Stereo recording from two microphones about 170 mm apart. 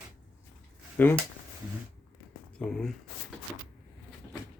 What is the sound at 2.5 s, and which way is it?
Speech, 5° left (ahead or behind).